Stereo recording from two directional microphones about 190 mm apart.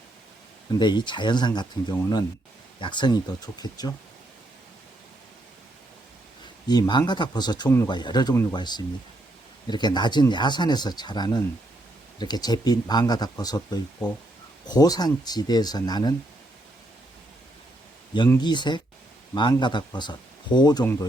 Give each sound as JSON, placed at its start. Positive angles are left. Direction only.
{"t": 0.7, "sound": "speech", "side_deg": 25}
{"t": 6.7, "sound": "speech", "side_deg": 20}
{"t": 18.3, "sound": "speech", "side_deg": 25}